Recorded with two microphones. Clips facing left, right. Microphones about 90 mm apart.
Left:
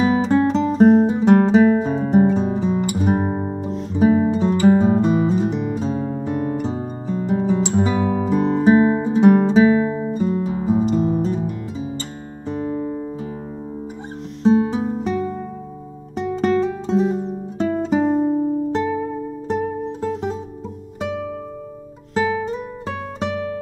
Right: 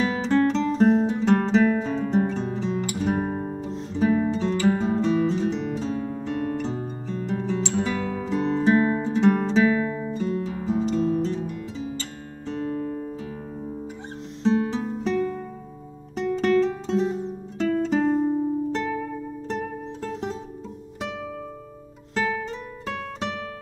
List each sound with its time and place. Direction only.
0.0 s music: 10° left (ahead or behind); by 3.6 s 25° left (ahead or behind)
3.9 s guitar: 15° left (ahead or behind)
5.3 s music: 10° left (ahead or behind)
5.9 s music: 30° left (ahead or behind)
7.1 s music: 15° left (ahead or behind)
12.4 s music: 20° left (ahead or behind)
14.4 s music: 15° left (ahead or behind)
22.1 s music: 10° left (ahead or behind)